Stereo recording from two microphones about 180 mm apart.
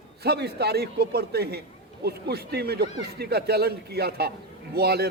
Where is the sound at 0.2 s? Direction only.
65° right (ahead or behind).